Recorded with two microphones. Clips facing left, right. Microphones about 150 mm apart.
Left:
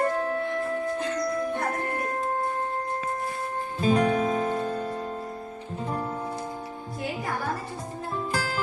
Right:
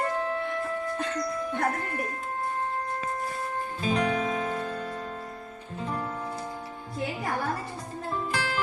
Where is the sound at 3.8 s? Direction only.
45° left (ahead or behind).